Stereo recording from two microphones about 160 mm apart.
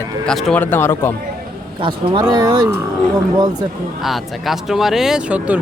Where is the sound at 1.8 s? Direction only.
30° right (ahead or behind).